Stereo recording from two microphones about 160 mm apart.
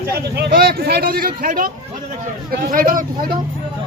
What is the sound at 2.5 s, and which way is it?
Speech, 70° right (ahead or behind).